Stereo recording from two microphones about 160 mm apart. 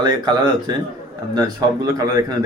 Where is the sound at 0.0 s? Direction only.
25° right (ahead or behind).